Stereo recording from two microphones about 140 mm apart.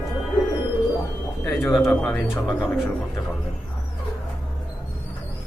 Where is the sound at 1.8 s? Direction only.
10° left (ahead or behind).